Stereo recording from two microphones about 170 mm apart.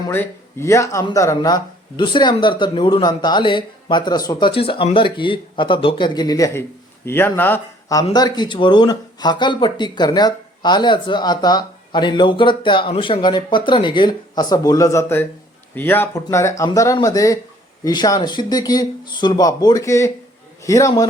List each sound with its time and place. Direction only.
0.1 s speech: 15° left (ahead or behind)